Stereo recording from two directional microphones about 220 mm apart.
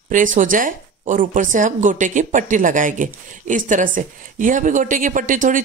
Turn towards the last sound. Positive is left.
turn(degrees=-35)  # may be behind; listen again after turning